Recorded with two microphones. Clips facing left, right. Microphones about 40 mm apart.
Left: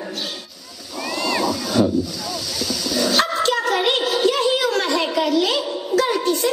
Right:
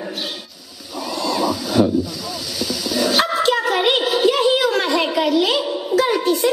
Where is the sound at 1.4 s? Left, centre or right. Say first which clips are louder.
Right 3 dB; centre.